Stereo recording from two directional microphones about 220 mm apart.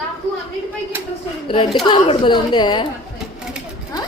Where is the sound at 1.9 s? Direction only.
20° left (ahead or behind).